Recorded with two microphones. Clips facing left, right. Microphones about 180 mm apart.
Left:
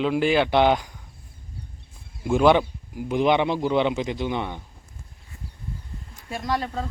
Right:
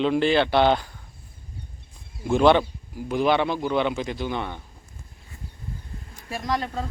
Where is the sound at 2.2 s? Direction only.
10° left (ahead or behind).